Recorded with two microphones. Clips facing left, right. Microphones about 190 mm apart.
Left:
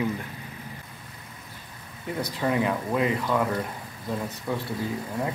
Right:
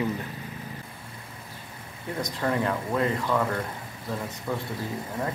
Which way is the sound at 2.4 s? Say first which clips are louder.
Left 2 dB; 10° left (ahead or behind).